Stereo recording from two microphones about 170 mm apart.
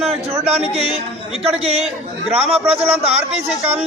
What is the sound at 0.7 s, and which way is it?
Speech, 35° right (ahead or behind).